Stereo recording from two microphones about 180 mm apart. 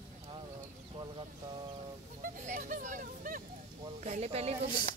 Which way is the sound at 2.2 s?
45° right (ahead or behind).